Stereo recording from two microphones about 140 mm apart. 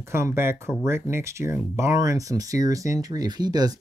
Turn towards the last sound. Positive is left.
turn(degrees=-30)  # may be behind; listen again after turning